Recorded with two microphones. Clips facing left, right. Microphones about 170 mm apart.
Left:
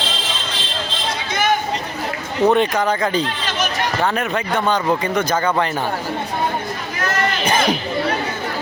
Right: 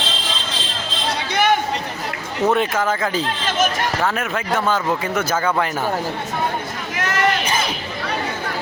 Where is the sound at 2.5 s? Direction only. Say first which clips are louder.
Left 2 dB; 5° right (ahead or behind).